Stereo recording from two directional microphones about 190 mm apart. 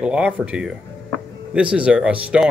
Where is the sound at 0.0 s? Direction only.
5° right (ahead or behind).